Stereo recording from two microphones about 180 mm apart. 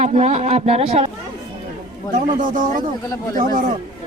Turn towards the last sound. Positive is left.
turn(degrees=-50)  # may be behind; listen again after turning